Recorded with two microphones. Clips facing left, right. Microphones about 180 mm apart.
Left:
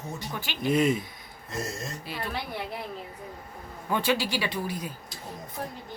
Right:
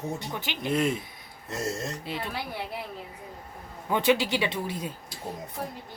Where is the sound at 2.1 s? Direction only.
25° right (ahead or behind).